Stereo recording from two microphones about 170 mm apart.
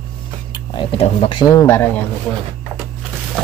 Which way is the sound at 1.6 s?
15° left (ahead or behind).